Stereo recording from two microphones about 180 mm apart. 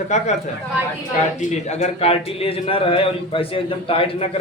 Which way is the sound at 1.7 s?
40° left (ahead or behind).